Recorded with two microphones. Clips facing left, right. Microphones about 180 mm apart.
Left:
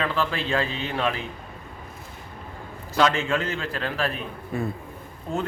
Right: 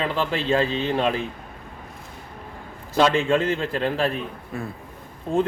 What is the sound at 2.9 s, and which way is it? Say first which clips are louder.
Speech: right 3 dB; 25° right (ahead or behind).